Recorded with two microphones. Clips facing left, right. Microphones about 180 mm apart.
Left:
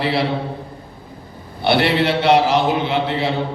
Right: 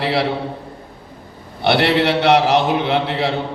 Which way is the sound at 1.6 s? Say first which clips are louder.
Right 1 dB; 65° right (ahead or behind).